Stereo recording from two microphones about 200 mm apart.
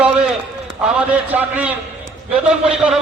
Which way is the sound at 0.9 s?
10° right (ahead or behind).